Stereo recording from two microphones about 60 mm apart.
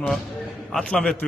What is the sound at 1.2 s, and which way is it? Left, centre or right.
Speech, centre.